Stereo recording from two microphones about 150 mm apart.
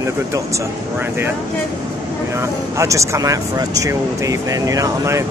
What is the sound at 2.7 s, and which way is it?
Speech, 20° right (ahead or behind).